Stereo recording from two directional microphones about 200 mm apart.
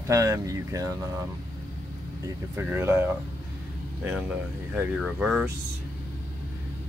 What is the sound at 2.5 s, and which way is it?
Speech, 10° right (ahead or behind).